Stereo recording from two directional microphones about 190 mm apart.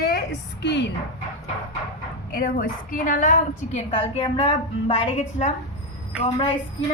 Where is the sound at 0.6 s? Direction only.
65° left (ahead or behind).